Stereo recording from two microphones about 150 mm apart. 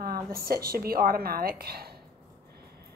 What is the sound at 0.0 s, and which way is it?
A woman's voice, 85° right.